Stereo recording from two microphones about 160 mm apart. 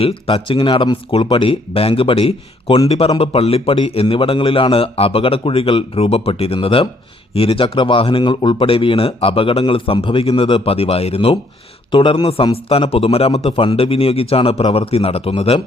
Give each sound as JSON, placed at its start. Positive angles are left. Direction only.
{"t": 0.0, "sound": "speech", "side_deg": 35}